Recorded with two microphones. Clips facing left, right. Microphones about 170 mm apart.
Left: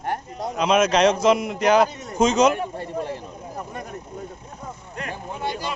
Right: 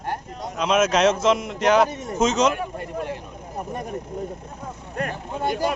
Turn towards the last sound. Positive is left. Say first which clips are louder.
# right 5 dB
turn(degrees=-50)  # may be behind; listen again after turning